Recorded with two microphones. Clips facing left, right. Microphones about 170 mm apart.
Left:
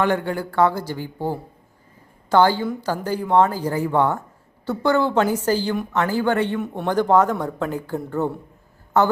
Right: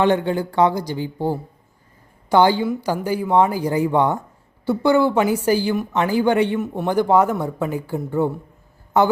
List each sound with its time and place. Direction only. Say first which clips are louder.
0.0 s speech: right 3 dB; 20° right (ahead or behind)